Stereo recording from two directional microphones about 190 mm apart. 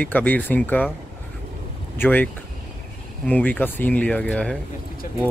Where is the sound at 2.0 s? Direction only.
10° left (ahead or behind).